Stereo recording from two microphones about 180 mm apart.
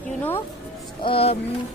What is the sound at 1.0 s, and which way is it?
Speech, 30° left (ahead or behind).